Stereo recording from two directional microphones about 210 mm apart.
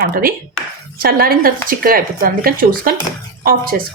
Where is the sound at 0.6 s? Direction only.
5° left (ahead or behind).